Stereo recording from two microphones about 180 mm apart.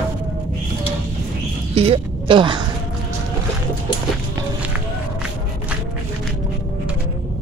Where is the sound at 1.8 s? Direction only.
30° right (ahead or behind).